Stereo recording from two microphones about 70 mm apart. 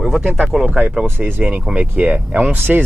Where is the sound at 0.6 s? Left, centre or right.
Centre.